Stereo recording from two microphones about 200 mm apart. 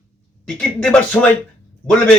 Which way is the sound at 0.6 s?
5° left (ahead or behind).